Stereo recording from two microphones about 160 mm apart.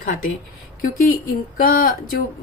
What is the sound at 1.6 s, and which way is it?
Speech, 65° left (ahead or behind).